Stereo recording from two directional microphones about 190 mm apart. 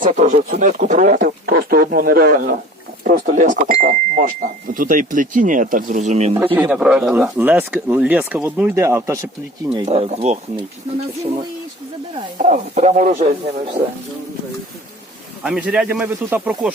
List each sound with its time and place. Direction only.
0.1 s speech: 40° right (ahead or behind)
6.3 s speech: 10° right (ahead or behind)
9.7 s speech: 25° right (ahead or behind)
12.4 s speech: 40° right (ahead or behind)
15.4 s speech: 5° right (ahead or behind)